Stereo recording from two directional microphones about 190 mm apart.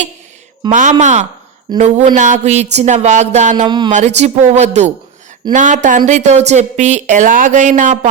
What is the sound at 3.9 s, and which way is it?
Speech, 35° right (ahead or behind).